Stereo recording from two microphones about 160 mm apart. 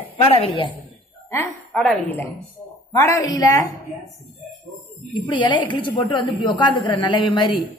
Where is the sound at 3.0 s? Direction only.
20° left (ahead or behind).